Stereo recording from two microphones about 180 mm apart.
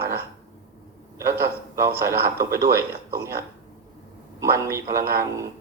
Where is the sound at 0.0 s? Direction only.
15° right (ahead or behind).